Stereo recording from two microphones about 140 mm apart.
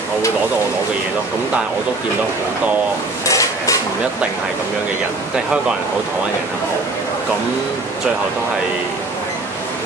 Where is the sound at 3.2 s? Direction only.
25° left (ahead or behind).